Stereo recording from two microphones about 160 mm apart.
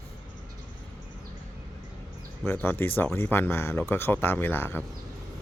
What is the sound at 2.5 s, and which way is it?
A man's voice, 15° left (ahead or behind).